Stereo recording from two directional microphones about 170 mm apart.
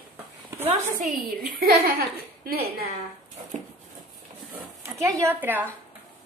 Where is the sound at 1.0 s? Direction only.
60° right (ahead or behind).